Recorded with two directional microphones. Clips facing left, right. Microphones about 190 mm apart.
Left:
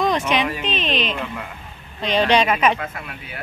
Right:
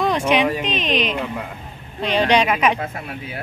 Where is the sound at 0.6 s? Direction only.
10° right (ahead or behind).